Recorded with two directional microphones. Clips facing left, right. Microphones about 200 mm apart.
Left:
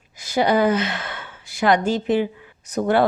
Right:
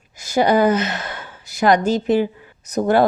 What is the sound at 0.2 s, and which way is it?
Speech, 45° right (ahead or behind).